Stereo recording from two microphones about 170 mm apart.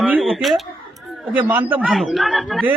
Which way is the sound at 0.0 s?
Centre (ahead or behind).